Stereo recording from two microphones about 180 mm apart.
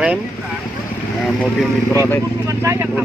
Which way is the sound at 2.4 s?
15° right (ahead or behind).